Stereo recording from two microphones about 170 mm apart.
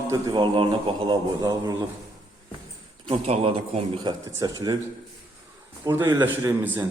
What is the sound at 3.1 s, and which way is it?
A man's voice, 35° right (ahead or behind).